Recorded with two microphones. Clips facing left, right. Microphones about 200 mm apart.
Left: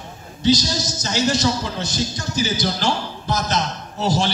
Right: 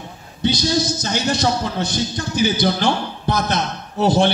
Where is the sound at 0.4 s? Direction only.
60° right (ahead or behind).